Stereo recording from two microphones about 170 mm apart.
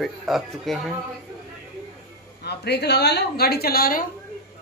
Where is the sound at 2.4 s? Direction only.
75° left (ahead or behind); by 4.0 s 60° left (ahead or behind).